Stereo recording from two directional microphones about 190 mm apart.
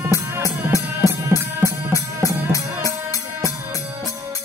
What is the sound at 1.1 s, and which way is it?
Music, 15° right (ahead or behind).